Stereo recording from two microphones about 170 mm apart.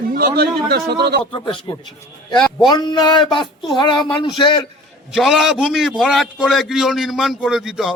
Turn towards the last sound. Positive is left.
turn(degrees=-5)  # may be behind; listen again after turning